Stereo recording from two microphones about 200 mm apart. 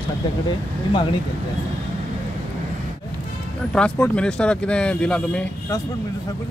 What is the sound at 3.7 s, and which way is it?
Speech, 5° left (ahead or behind).